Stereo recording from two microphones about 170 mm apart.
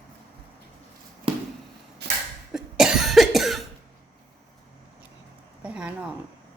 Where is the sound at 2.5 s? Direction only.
5° right (ahead or behind).